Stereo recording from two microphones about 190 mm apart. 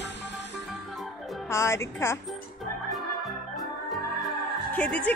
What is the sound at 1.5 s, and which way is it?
Speech, 15° left (ahead or behind).